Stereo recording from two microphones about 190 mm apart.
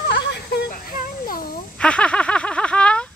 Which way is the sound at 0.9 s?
45° left (ahead or behind).